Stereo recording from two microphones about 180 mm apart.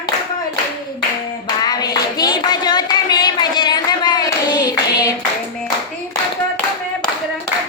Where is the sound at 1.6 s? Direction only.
20° left (ahead or behind).